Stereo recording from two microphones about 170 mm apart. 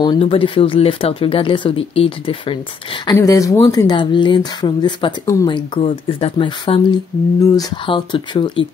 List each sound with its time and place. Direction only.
0.0 s speech: 30° left (ahead or behind)
3.2 s speech: 20° left (ahead or behind)
5.8 s speech: 35° left (ahead or behind)